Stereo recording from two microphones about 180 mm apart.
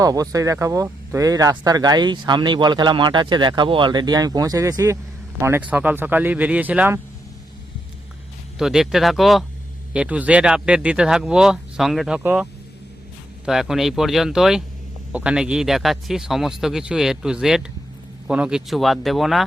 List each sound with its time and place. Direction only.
0.0 s speech: 20° right (ahead or behind)
8.5 s speech: centre (ahead or behind)